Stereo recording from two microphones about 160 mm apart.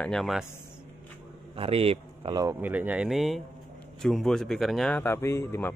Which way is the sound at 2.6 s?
10° right (ahead or behind).